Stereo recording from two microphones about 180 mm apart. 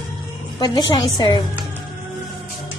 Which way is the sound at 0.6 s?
25° left (ahead or behind).